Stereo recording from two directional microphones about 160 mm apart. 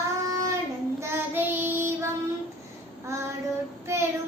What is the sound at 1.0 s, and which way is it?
Child singing, 15° right (ahead or behind).